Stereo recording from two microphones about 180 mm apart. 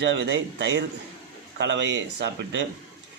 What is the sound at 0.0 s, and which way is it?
Speech, 75° right (ahead or behind).